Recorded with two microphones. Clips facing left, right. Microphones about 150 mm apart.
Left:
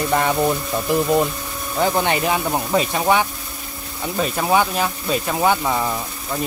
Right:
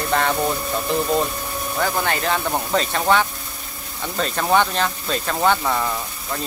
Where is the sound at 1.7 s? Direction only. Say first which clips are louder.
Left 4 dB; 20° left (ahead or behind).